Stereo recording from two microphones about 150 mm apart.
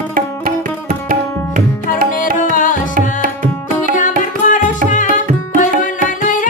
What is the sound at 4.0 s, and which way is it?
Music, 60° left (ahead or behind).